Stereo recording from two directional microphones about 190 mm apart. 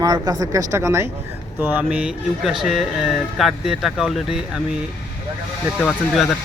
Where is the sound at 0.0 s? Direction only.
20° right (ahead or behind); by 4.6 s centre (ahead or behind).